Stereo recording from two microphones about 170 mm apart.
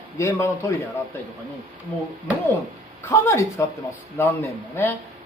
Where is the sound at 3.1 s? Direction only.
15° left (ahead or behind).